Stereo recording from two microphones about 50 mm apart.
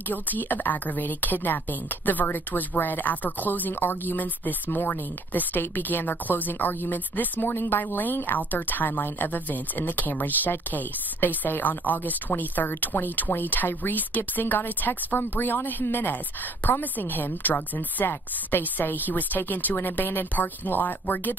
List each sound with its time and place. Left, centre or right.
0.1 s a woman's voice: left
7.8 s a woman's voice: left